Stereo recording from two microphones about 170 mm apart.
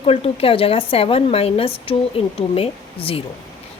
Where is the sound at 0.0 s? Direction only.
35° left (ahead or behind).